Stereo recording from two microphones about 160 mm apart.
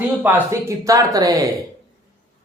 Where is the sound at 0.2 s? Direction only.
15° right (ahead or behind).